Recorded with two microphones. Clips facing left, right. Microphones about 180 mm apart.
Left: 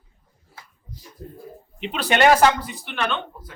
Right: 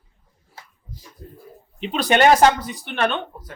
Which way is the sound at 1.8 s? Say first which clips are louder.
Right 2 dB; 40° right (ahead or behind).